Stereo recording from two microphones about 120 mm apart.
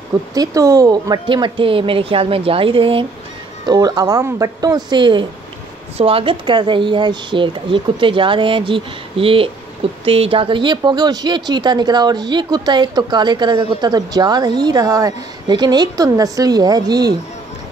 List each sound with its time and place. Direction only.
0.3 s speech: 30° right (ahead or behind); by 3.1 s 45° right (ahead or behind)
3.6 s speech: 35° right (ahead or behind)
5.9 s speech: 50° right (ahead or behind); by 17.1 s 35° right (ahead or behind)